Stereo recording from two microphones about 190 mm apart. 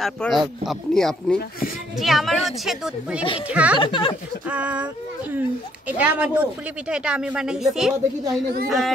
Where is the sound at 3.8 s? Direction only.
25° left (ahead or behind).